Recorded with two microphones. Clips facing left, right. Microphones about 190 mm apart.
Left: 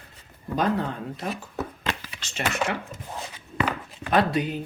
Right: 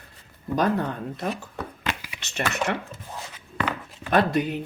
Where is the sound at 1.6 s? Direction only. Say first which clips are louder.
Left 3 dB; 5° left (ahead or behind).